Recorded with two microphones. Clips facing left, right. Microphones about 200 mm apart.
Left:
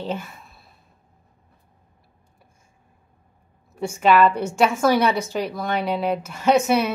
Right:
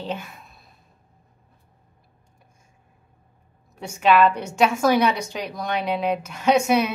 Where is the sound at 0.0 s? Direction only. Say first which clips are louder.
Left 2 dB; 5° left (ahead or behind).